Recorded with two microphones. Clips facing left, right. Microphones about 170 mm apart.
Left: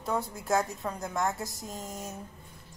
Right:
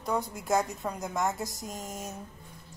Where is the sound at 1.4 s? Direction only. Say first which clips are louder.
Right 1 dB; 20° right (ahead or behind).